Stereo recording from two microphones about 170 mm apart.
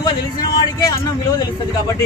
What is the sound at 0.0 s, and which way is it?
Speech, 25° left (ahead or behind).